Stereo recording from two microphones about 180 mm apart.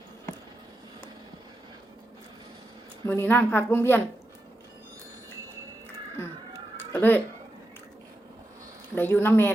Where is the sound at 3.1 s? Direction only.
10° left (ahead or behind).